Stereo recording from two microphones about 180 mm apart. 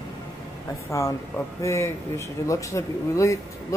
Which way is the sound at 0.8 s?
15° left (ahead or behind).